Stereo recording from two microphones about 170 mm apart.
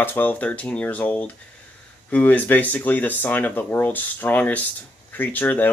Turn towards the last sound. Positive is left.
turn(degrees=10)  # may be behind; listen again after turning